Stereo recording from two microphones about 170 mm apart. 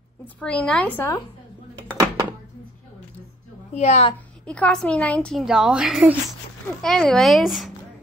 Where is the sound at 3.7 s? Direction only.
40° left (ahead or behind).